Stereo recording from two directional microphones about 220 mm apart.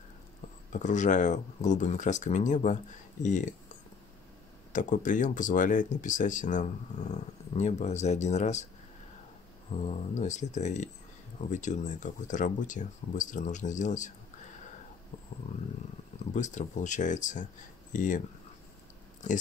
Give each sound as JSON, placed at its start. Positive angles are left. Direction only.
{"t": 0.7, "sound": "speech", "side_deg": 35}
{"t": 4.7, "sound": "speech", "side_deg": 35}
{"t": 9.8, "sound": "speech", "side_deg": 30}
{"t": 16.3, "sound": "speech", "side_deg": 35}
{"t": 19.2, "sound": "speech", "side_deg": 35}